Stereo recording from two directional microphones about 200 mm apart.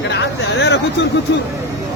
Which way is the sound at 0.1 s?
60° left (ahead or behind).